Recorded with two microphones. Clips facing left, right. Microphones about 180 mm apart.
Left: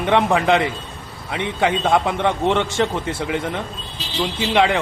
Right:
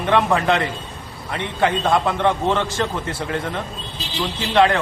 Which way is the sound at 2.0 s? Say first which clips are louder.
Even; 15° left (ahead or behind).